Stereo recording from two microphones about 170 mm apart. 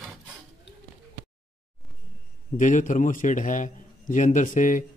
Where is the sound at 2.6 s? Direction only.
50° left (ahead or behind).